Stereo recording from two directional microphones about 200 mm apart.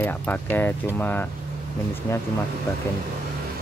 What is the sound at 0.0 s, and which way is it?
Speech, 10° left (ahead or behind).